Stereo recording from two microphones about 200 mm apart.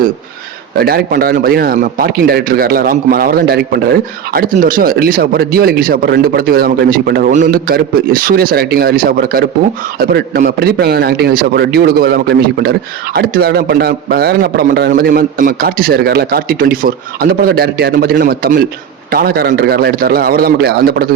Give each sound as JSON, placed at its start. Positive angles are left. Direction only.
{"t": 0.8, "sound": "a man's voice", "side_deg": -50}